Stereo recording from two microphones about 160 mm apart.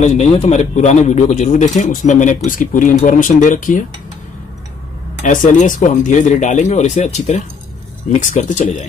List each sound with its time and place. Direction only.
0.0 s a man's voice: 45° left (ahead or behind)
5.2 s a man's voice: 55° left (ahead or behind)